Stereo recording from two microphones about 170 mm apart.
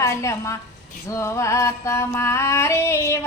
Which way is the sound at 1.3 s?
15° left (ahead or behind).